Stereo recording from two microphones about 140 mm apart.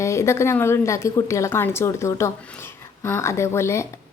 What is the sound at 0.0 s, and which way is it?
A woman's voice, 20° left (ahead or behind).